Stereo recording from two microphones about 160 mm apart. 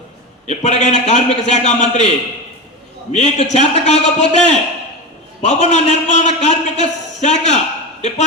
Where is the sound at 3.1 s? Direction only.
45° left (ahead or behind).